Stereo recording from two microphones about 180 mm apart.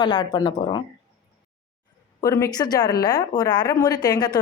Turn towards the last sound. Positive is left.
turn(degrees=20)  # may be behind; listen again after turning